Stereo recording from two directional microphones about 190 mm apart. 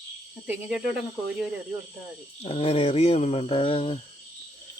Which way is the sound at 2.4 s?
30° left (ahead or behind).